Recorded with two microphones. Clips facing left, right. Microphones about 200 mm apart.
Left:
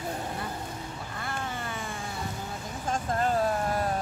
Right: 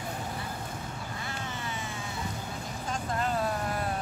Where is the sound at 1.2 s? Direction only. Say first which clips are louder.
Left 5 dB; 50° left (ahead or behind).